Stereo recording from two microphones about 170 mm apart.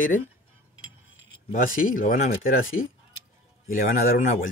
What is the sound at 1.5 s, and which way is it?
Speech, 55° left (ahead or behind).